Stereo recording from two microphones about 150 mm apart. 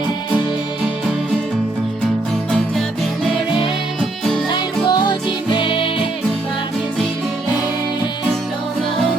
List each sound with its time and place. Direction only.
4.2 s music: 5° left (ahead or behind)
4.9 s music: 30° left (ahead or behind)